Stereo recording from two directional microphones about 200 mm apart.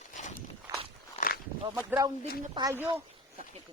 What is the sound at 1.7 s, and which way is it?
Speech, 10° right (ahead or behind).